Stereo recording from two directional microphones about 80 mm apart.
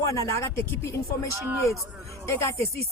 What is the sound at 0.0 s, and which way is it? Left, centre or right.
Speech, left.